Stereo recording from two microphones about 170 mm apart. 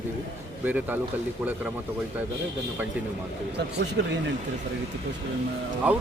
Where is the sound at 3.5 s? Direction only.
90° right.